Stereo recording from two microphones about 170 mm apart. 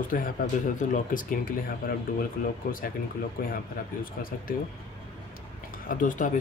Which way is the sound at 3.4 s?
65° left (ahead or behind).